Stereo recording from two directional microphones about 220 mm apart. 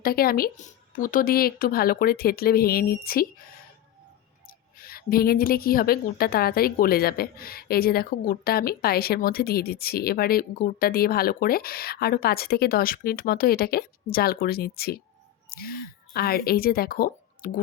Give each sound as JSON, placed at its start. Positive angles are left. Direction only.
{"t": 0.0, "sound": "a woman's voice", "side_deg": 45}
{"t": 4.4, "sound": "a woman's voice", "side_deg": 40}